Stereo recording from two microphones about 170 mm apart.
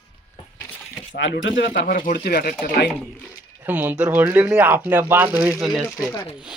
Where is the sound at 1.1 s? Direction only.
90° left; by 2.1 s 60° left (ahead or behind).